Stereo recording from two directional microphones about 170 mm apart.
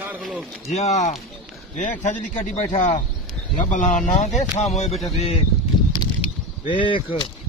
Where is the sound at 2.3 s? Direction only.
45° left (ahead or behind).